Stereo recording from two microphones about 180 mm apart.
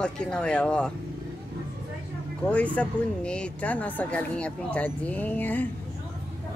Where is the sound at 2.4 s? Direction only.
5° left (ahead or behind).